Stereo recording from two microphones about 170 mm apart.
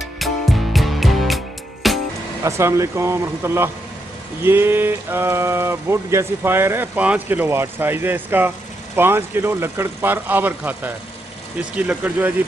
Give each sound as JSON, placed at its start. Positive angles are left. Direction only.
{"t": 0.2, "sound": "music", "side_deg": 0}
{"t": 2.4, "sound": "speech", "side_deg": -15}